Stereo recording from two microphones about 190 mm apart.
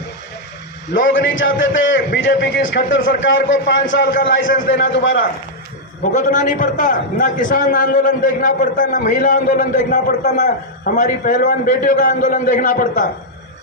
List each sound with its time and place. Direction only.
1.0 s a man's voice: 80° left
6.1 s a man's voice: 40° left (ahead or behind)